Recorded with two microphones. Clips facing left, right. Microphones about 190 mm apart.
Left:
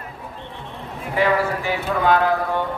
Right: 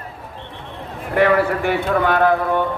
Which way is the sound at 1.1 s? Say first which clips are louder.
Right 4 dB; 60° right (ahead or behind).